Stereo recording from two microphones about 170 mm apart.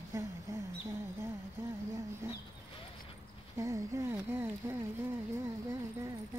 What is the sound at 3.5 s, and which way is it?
Speech, 15° right (ahead or behind).